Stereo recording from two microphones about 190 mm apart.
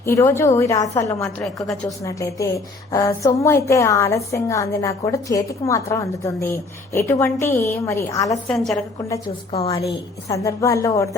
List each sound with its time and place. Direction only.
0.0 s a woman's voice: 15° left (ahead or behind)
8.4 s a woman's voice: centre (ahead or behind)
9.5 s a woman's voice: 30° left (ahead or behind)
10.2 s a woman's voice: 15° left (ahead or behind)